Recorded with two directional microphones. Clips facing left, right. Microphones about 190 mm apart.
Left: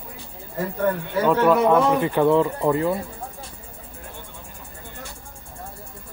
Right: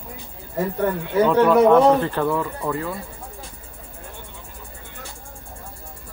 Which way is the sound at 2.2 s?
25° left (ahead or behind).